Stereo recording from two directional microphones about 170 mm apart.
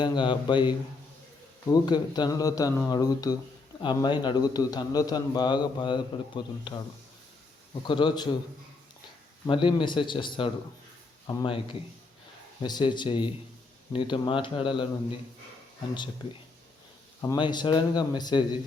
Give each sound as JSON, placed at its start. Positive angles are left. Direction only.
{"t": 0.0, "sound": "a man's voice", "side_deg": 25}
{"t": 9.5, "sound": "a man's voice", "side_deg": 30}
{"t": 17.2, "sound": "a man's voice", "side_deg": 25}